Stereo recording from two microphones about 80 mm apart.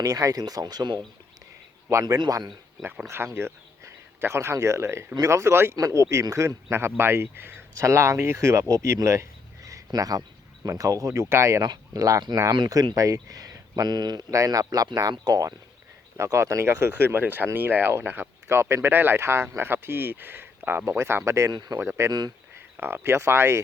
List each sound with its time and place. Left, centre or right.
0.0 s speech: right
1.9 s speech: right
3.3 s speech: right
5.7 s speech: right
11.6 s speech: right
12.5 s speech: right
14.3 s speech: right
16.1 s speech: right
21.5 s speech: right
21.8 s speech: right